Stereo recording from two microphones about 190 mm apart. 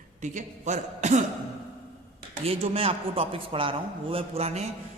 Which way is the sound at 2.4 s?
30° right (ahead or behind).